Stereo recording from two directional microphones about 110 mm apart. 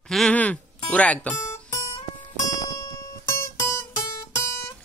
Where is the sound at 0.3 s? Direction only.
15° left (ahead or behind).